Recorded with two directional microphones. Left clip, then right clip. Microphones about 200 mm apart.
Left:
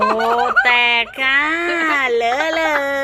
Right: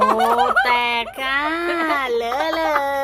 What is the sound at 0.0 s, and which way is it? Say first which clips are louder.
Giggle: even; 20° right (ahead or behind).